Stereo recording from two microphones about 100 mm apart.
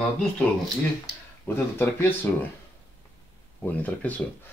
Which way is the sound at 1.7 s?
20° left (ahead or behind).